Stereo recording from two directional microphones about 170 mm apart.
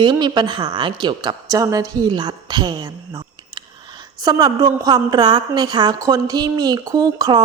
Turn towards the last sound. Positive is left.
turn(degrees=-25)  # may be behind; listen again after turning